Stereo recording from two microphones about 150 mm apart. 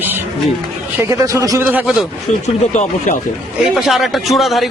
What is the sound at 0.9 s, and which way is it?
Speech, 20° right (ahead or behind).